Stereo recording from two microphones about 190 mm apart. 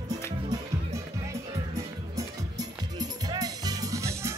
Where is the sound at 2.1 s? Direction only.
20° right (ahead or behind).